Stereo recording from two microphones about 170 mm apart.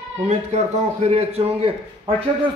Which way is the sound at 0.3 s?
40° right (ahead or behind).